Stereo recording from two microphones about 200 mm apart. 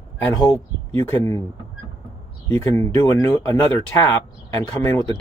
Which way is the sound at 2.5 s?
10° left (ahead or behind).